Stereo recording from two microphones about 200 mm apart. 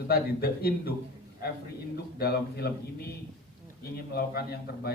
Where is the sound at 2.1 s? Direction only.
50° left (ahead or behind).